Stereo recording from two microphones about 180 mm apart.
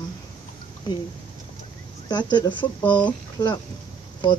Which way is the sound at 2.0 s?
25° left (ahead or behind).